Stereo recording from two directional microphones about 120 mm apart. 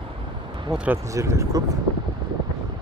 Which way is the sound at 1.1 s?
25° right (ahead or behind).